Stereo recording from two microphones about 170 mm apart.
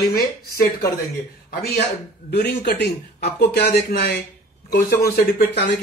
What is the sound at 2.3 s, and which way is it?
Speech, 70° left (ahead or behind).